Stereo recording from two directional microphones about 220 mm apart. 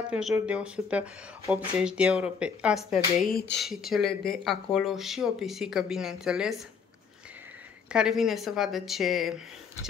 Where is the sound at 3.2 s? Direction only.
45° left (ahead or behind).